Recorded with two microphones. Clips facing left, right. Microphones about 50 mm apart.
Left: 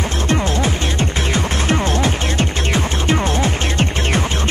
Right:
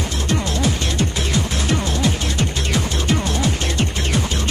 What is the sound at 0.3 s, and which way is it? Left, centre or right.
Music, left.